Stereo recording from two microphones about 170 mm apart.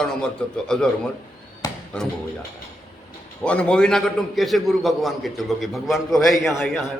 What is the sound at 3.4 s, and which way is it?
A man's voice, 5° left (ahead or behind).